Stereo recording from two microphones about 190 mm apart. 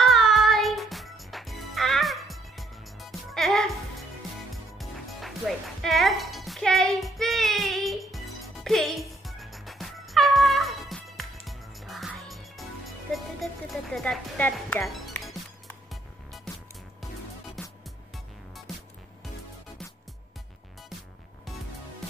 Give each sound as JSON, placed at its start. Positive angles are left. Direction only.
{"t": 0.0, "sound": "music", "side_deg": 0}
{"t": 5.8, "sound": "music", "side_deg": 0}
{"t": 16.5, "sound": "music", "side_deg": 5}